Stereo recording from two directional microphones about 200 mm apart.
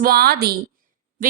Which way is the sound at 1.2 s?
40° right (ahead or behind).